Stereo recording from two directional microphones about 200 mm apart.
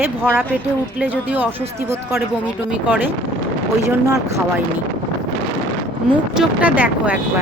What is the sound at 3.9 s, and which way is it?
Speech, 15° right (ahead or behind).